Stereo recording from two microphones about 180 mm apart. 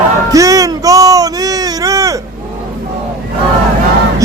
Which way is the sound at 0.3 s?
20° right (ahead or behind).